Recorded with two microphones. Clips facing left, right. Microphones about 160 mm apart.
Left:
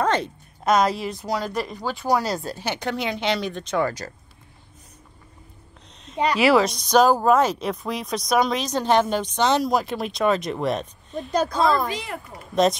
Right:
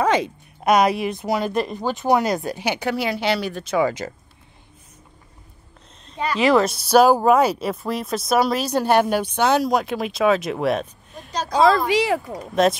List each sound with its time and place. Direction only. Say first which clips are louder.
0.0 s a sound: right 3 dB; 10° right (ahead or behind)
1.0 s speech: right 4 dB; 20° right (ahead or behind)
6.1 s speech: left 1 dB; 15° left (ahead or behind)
6.5 s speech: right 2 dB; 5° right (ahead or behind)
11.9 s speech: right 12 dB; 80° right
12.6 s speech: right 1 dB; 5° right (ahead or behind)